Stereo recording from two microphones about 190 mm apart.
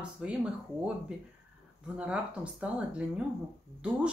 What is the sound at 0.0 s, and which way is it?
Speech, 5° right (ahead or behind).